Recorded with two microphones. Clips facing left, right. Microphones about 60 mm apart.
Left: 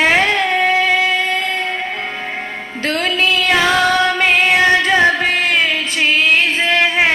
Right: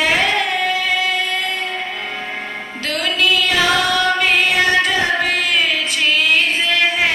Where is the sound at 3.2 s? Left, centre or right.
Left.